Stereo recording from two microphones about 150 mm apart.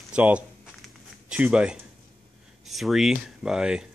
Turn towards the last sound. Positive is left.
turn(degrees=-5)  # may be behind; listen again after turning